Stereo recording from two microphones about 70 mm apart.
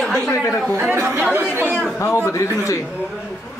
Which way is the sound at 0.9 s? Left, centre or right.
Right.